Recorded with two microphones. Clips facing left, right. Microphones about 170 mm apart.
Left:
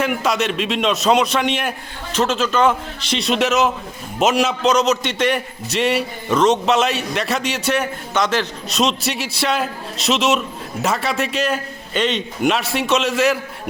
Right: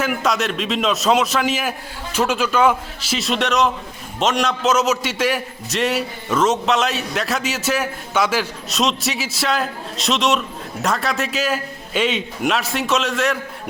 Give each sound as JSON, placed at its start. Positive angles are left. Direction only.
{"t": 0.0, "sound": "a man's voice", "side_deg": 0}